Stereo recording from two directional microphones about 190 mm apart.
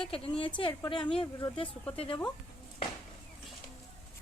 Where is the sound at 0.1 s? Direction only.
25° left (ahead or behind).